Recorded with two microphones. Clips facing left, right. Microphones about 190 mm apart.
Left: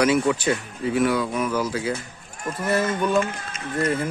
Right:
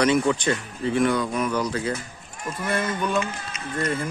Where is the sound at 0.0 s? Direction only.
5° left (ahead or behind).